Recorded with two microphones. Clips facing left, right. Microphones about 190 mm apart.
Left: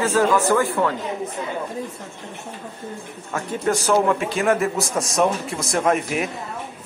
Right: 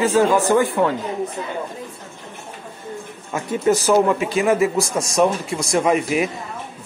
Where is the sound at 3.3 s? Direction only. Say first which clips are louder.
Right 4 dB; 5° right (ahead or behind).